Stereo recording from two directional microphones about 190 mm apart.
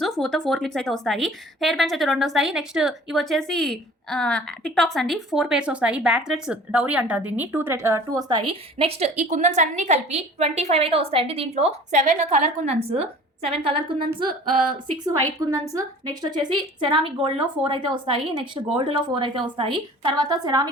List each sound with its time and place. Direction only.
0.0 s a woman's voice: centre (ahead or behind); by 13.9 s 30° right (ahead or behind)
15.4 s a woman's voice: 15° right (ahead or behind)